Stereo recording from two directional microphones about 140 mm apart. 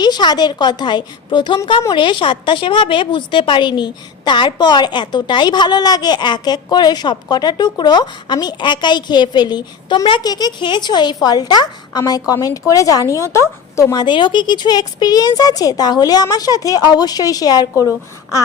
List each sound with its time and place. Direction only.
0.0 s a woman's voice: 30° left (ahead or behind)